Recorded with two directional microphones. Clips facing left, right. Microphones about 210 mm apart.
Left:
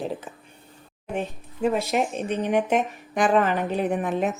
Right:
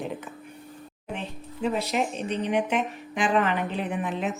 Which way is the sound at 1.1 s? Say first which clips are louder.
Left 7 dB; 45° left (ahead or behind).